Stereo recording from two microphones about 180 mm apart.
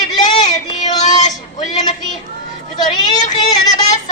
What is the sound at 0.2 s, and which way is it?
Child singing, 45° left (ahead or behind).